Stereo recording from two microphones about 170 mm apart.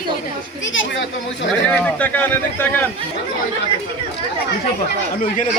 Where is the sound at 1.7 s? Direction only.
10° left (ahead or behind).